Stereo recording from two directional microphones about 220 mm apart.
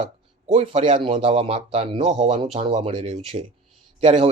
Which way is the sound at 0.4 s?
25° right (ahead or behind).